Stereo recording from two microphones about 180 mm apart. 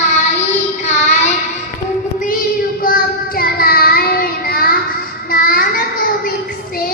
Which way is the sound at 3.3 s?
55° left (ahead or behind).